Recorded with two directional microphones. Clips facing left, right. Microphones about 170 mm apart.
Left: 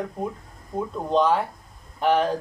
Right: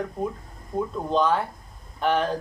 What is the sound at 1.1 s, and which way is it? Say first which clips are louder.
Speech: left 2 dB; 10° left (ahead or behind).